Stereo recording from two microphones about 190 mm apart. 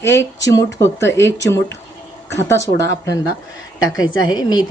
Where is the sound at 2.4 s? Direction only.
15° left (ahead or behind).